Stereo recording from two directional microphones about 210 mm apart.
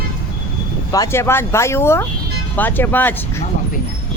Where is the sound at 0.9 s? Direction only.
15° left (ahead or behind).